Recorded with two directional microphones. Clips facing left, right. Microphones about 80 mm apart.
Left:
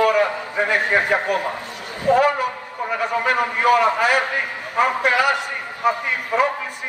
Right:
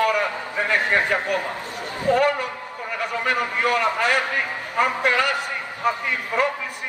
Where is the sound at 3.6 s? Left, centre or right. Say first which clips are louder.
Left 5 dB; centre.